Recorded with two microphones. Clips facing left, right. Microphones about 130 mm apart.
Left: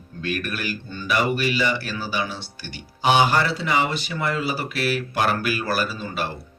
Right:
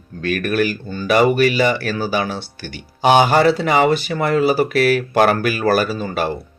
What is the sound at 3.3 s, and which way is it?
Speech, 75° right (ahead or behind).